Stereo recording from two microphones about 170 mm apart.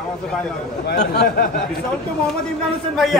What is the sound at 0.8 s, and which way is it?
Speech, 70° left (ahead or behind).